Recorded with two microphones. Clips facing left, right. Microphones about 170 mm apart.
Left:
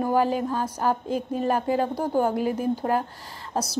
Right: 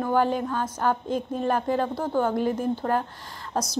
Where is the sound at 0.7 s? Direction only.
35° left (ahead or behind).